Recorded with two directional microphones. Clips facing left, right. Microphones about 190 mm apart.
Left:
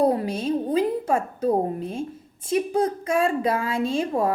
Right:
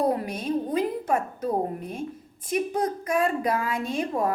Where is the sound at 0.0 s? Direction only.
30° left (ahead or behind).